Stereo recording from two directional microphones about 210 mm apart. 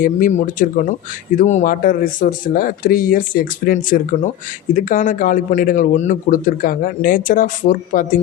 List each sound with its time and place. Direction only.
0.0 s speech: 40° left (ahead or behind)